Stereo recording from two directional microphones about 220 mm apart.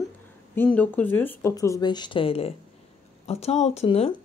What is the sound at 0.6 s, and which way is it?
Speech, 10° left (ahead or behind).